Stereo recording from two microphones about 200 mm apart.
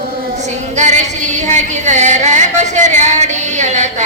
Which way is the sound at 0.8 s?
35° right (ahead or behind).